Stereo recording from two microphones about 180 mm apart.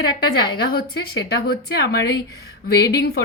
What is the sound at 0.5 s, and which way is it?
Speech, 60° left (ahead or behind).